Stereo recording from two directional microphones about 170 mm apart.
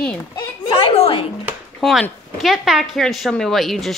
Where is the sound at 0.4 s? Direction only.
30° left (ahead or behind).